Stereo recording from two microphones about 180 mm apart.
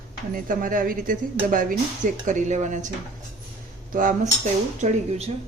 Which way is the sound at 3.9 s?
50° right (ahead or behind).